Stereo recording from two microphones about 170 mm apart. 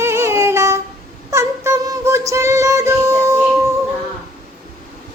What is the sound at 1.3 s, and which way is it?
Music, 20° right (ahead or behind).